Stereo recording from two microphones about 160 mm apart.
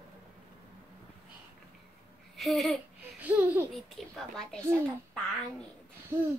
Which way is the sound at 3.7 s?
Centre (ahead or behind).